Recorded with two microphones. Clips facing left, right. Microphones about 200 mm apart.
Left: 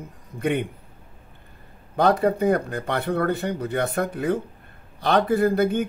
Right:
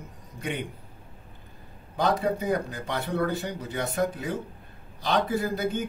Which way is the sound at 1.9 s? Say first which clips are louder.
Left 6 dB; 60° left (ahead or behind).